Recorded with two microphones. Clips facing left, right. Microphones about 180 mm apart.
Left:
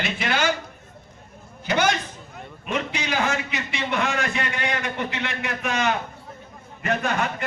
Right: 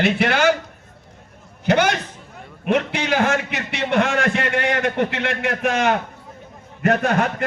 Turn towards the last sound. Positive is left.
turn(degrees=-55)  # may be behind; listen again after turning